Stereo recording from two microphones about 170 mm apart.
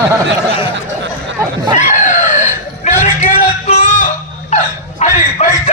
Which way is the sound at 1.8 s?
45° left (ahead or behind).